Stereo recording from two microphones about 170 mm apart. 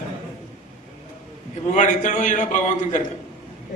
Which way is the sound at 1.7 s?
45° left (ahead or behind).